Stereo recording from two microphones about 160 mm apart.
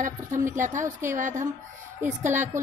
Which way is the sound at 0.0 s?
55° right (ahead or behind).